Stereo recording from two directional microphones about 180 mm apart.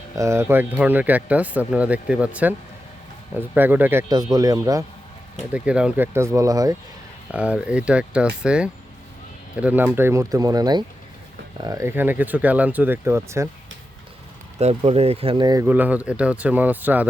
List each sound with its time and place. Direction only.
0.2 s speech: 15° right (ahead or behind)
4.1 s a man's voice: 20° right (ahead or behind)
5.5 s speech: 5° right (ahead or behind)
7.3 s speech: 5° right (ahead or behind)
14.6 s speech: 35° right (ahead or behind)
15.6 s speech: 10° right (ahead or behind)